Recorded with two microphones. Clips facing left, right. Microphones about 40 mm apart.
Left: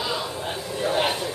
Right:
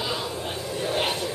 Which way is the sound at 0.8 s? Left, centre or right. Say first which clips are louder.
Left 4 dB; centre.